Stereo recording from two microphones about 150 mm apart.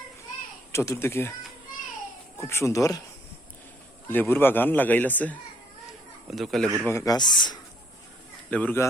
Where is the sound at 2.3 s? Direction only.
20° left (ahead or behind).